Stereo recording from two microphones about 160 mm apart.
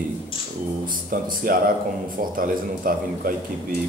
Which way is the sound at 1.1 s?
60° right (ahead or behind).